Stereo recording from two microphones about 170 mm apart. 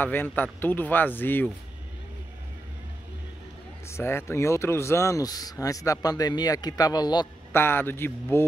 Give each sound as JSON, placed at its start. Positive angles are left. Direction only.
{"t": 0.0, "sound": "speech", "side_deg": 10}
{"t": 3.8, "sound": "speech", "side_deg": 15}
{"t": 7.5, "sound": "speech", "side_deg": 15}